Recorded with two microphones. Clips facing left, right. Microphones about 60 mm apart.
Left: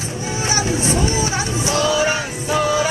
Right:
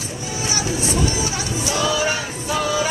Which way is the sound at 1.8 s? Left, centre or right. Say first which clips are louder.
Left 2 dB; centre.